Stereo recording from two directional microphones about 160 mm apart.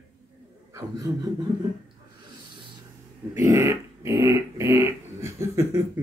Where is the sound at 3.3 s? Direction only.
15° right (ahead or behind).